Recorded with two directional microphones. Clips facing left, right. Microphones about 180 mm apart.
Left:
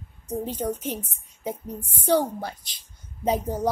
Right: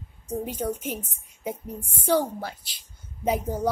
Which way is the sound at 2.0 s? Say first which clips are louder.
Left 1 dB; 15° left (ahead or behind).